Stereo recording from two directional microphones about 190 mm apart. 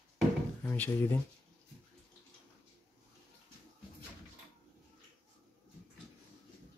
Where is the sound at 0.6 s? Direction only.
10° left (ahead or behind).